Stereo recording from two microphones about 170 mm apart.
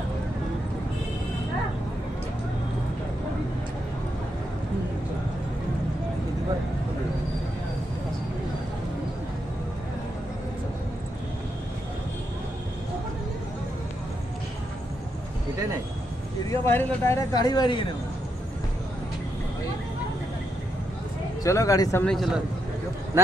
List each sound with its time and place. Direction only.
16.4 s speech: 15° left (ahead or behind)
21.4 s speech: 20° left (ahead or behind)
22.0 s a man's voice: centre (ahead or behind)
23.2 s a man's voice: 15° right (ahead or behind)